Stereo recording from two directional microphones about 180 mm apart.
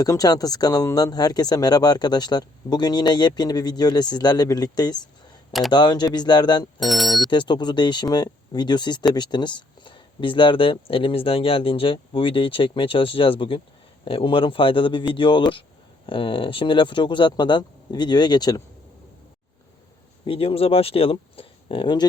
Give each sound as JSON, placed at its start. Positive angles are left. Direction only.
{"t": 0.0, "sound": "speech", "side_deg": 20}
{"t": 6.7, "sound": "speech", "side_deg": 0}
{"t": 7.3, "sound": "speech", "side_deg": 25}
{"t": 20.2, "sound": "speech", "side_deg": 30}